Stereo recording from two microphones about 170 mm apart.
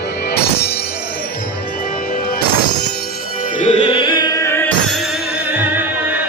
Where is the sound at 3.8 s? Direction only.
30° left (ahead or behind); by 4.7 s 15° left (ahead or behind).